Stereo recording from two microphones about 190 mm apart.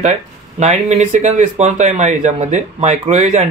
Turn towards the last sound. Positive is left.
turn(degrees=-35)  # may be behind; listen again after turning